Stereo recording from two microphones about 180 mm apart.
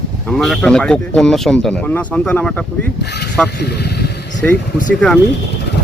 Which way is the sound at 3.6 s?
65° left (ahead or behind).